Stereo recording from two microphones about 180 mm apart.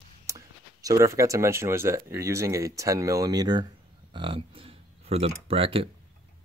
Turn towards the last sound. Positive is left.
turn(degrees=-30)  # may be behind; listen again after turning